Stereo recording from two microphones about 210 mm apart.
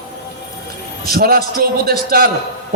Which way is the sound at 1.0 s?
45° right (ahead or behind).